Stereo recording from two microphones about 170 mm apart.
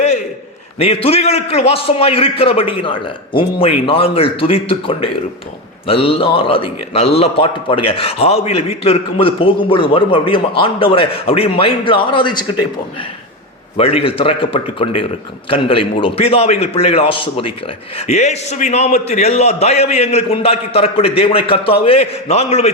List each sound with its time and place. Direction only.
0.8 s a man's voice: 35° left (ahead or behind)
13.7 s a man's voice: 35° left (ahead or behind)